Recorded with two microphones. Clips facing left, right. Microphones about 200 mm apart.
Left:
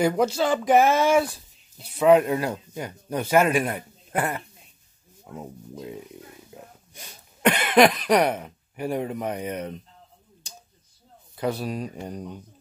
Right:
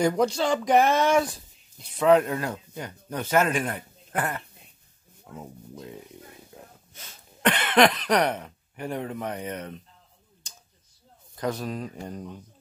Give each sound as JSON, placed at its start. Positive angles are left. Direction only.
{"t": 0.0, "sound": "speech", "side_deg": 5}
{"t": 6.5, "sound": "a sound", "side_deg": 10}
{"t": 6.9, "sound": "cough", "side_deg": 15}
{"t": 11.3, "sound": "speech", "side_deg": 10}